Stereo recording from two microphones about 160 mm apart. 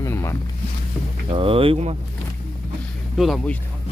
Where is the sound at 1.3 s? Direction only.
35° right (ahead or behind).